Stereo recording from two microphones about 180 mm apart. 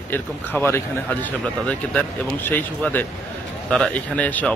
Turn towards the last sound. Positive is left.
turn(degrees=10)  # may be behind; listen again after turning